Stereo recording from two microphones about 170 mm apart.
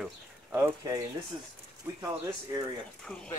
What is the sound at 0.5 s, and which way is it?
Speech, 15° right (ahead or behind).